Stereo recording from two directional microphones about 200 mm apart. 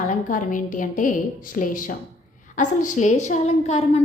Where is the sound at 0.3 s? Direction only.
40° left (ahead or behind).